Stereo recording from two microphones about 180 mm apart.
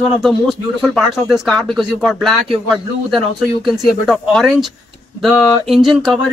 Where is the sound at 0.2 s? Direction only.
Centre (ahead or behind).